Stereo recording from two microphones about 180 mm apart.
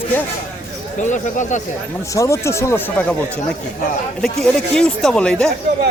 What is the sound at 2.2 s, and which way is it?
Speech, 15° left (ahead or behind).